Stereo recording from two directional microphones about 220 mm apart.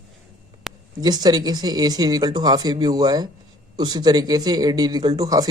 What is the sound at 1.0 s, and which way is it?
Speech, 20° right (ahead or behind).